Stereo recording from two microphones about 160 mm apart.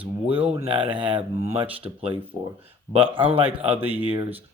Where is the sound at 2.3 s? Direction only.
30° right (ahead or behind).